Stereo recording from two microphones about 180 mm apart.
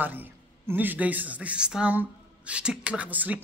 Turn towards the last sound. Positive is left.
turn(degrees=-10)  # may be behind; listen again after turning